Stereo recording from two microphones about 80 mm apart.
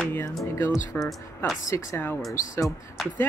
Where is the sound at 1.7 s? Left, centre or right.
Left.